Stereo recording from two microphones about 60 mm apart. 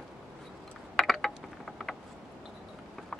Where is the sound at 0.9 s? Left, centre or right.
Centre.